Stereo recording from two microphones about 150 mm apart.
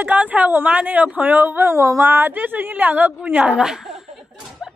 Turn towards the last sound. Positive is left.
turn(degrees=0)  # may be behind; listen again after turning